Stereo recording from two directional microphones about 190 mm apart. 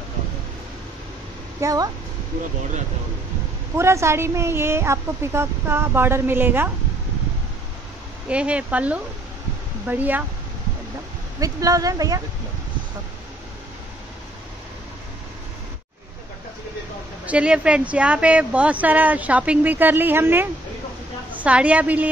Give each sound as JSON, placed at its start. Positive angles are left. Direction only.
{"t": 1.6, "sound": "a woman's voice", "side_deg": -20}
{"t": 3.7, "sound": "a woman's voice", "side_deg": -15}
{"t": 8.3, "sound": "a woman's voice", "side_deg": -5}
{"t": 11.3, "sound": "speech", "side_deg": -20}
{"t": 17.3, "sound": "a woman's voice", "side_deg": -5}